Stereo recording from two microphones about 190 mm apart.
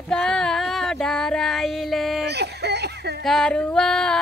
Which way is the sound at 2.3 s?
60° right (ahead or behind).